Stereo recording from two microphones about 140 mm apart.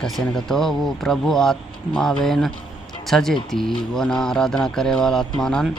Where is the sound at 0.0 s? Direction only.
5° left (ahead or behind).